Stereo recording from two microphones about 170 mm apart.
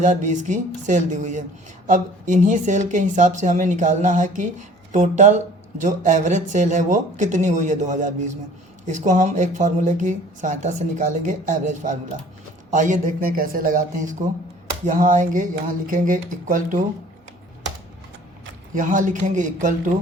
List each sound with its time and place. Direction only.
0.0 s speech: 45° right (ahead or behind)
18.7 s speech: 50° right (ahead or behind)